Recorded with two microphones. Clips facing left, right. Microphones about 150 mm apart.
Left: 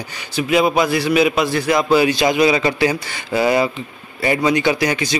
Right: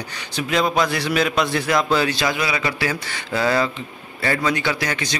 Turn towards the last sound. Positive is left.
turn(degrees=10)  # may be behind; listen again after turning